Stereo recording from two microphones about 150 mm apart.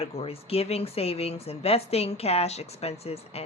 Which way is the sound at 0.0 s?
40° left (ahead or behind).